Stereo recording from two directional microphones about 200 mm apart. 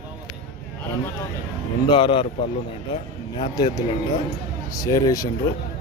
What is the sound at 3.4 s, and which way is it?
Speech, 20° left (ahead or behind).